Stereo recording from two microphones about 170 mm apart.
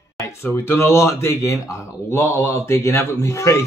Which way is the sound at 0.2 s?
15° left (ahead or behind).